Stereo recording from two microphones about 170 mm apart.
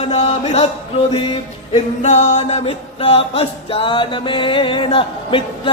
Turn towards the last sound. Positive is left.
turn(degrees=30)  # may be behind; listen again after turning